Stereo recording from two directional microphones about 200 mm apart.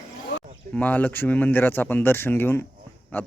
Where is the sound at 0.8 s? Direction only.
10° left (ahead or behind).